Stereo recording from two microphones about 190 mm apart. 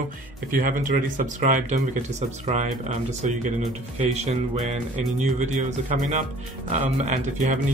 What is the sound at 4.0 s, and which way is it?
Speech, 35° right (ahead or behind).